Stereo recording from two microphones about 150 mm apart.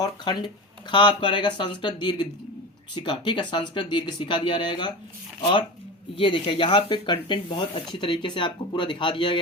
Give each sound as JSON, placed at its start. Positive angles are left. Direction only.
{"t": 0.0, "sound": "speech", "side_deg": 30}
{"t": 6.1, "sound": "speech", "side_deg": 35}